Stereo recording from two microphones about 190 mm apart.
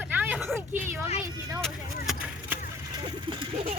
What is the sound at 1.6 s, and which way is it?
Speech, centre (ahead or behind).